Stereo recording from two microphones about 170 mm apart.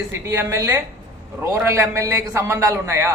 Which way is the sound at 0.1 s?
15° right (ahead or behind).